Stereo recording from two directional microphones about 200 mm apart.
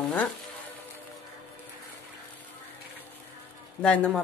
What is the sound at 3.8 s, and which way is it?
Speech, 5° left (ahead or behind).